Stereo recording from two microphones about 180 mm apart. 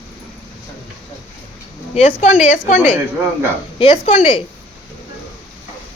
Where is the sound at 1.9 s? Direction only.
40° left (ahead or behind).